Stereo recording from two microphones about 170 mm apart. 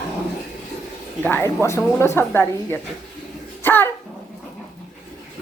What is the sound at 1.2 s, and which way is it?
A woman's voice, 10° left (ahead or behind).